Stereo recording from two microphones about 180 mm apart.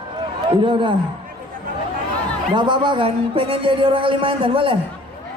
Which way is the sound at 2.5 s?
25° right (ahead or behind).